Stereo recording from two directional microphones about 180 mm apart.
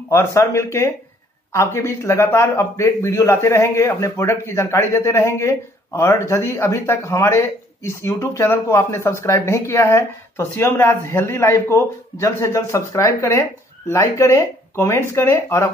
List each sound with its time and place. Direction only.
0.1 s speech: 15° left (ahead or behind)